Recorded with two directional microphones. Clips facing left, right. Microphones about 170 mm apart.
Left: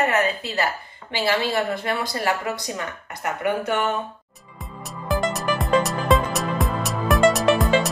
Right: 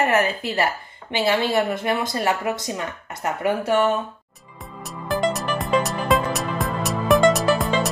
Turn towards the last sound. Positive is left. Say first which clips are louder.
# left 2 dB
turn(degrees=0)  # may be behind; listen again after turning